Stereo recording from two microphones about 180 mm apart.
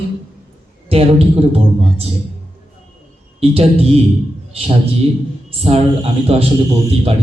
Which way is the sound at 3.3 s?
35° right (ahead or behind).